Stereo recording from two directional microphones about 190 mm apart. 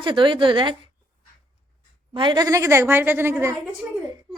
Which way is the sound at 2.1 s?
25° right (ahead or behind).